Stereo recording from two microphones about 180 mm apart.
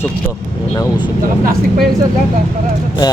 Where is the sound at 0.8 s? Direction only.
25° left (ahead or behind).